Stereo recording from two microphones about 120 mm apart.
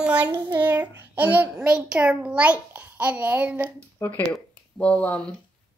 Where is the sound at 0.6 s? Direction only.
15° right (ahead or behind).